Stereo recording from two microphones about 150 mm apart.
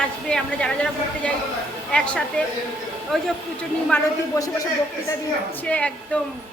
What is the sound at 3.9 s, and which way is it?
Speech, 15° left (ahead or behind).